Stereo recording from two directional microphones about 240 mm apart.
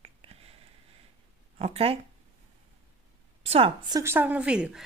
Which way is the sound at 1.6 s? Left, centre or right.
Right.